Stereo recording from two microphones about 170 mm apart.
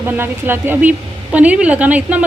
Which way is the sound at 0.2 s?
10° right (ahead or behind).